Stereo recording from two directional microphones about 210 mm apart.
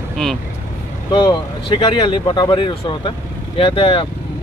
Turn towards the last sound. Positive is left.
turn(degrees=25)  # may be behind; listen again after turning